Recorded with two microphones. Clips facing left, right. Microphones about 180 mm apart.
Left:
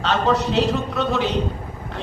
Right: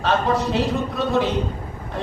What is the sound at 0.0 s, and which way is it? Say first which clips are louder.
A man's voice: even; 75° left (ahead or behind).